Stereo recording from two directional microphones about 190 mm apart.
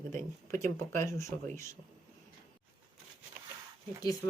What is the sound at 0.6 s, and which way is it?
Speech, 15° left (ahead or behind).